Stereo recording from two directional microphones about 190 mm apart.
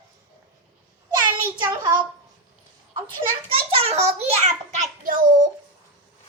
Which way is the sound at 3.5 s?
30° right (ahead or behind).